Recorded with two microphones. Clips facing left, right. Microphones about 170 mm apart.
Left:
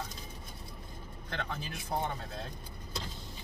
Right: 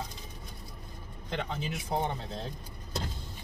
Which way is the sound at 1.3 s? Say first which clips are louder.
Right 4 dB; 20° right (ahead or behind).